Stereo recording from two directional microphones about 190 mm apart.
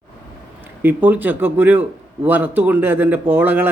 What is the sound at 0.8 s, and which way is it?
Speech, 10° right (ahead or behind).